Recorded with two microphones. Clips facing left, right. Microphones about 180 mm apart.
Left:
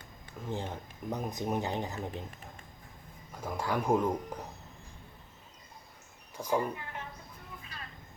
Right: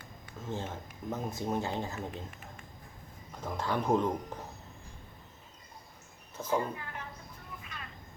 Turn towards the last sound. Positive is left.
turn(degrees=35)  # may be behind; listen again after turning